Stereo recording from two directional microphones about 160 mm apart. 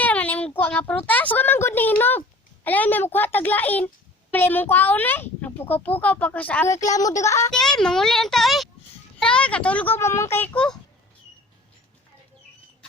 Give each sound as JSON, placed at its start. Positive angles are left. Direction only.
{"t": 0.0, "sound": "a woman's voice", "side_deg": 10}
{"t": 7.5, "sound": "a child's voice", "side_deg": 5}